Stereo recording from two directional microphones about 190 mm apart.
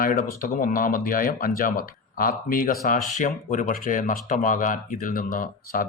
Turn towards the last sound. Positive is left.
turn(degrees=45)  # may be behind; listen again after turning